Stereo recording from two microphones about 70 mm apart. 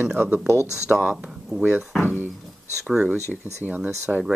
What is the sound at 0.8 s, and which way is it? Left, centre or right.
Speech, centre.